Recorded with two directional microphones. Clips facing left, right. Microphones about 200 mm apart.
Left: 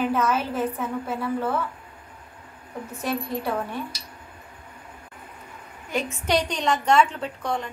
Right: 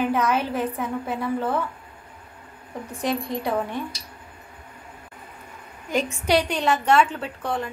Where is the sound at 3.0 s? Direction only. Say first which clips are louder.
Right 2 dB; 15° right (ahead or behind).